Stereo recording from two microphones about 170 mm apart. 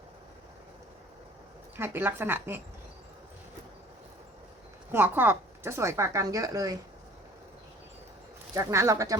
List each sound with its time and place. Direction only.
1.7 s a woman's voice: 15° right (ahead or behind)
4.9 s a woman's voice: 10° right (ahead or behind)
8.5 s a woman's voice: 15° right (ahead or behind)